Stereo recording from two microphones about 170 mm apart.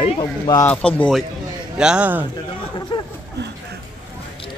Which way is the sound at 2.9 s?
30° left (ahead or behind).